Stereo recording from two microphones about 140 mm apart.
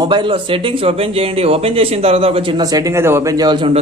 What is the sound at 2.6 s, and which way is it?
Speech, 25° right (ahead or behind).